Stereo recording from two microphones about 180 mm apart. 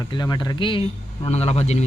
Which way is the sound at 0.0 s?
20° left (ahead or behind).